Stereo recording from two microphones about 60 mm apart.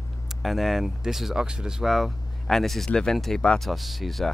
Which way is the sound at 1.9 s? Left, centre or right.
Centre.